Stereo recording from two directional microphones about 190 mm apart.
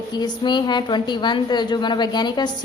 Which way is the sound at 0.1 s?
20° left (ahead or behind).